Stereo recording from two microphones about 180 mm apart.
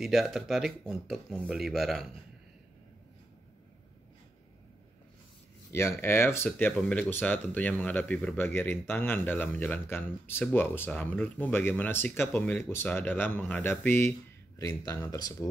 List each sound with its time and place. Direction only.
0.0 s speech: centre (ahead or behind)
5.7 s speech: 15° left (ahead or behind)